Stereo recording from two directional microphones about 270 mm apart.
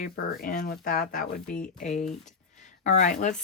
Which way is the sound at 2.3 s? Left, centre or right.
Left.